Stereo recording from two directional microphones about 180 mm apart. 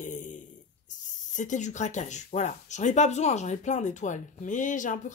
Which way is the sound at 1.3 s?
45° left (ahead or behind).